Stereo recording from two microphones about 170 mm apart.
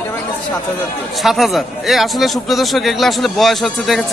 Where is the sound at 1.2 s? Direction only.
Centre (ahead or behind).